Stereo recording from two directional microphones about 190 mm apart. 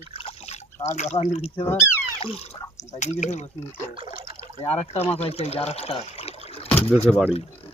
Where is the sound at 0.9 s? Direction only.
35° left (ahead or behind).